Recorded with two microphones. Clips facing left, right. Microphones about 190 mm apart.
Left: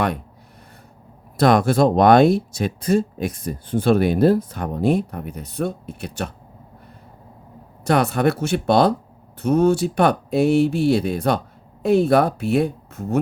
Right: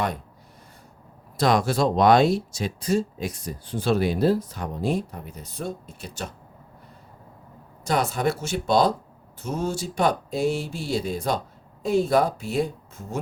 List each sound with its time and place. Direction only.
1.4 s speech: 55° left (ahead or behind)
7.9 s speech: 65° left (ahead or behind)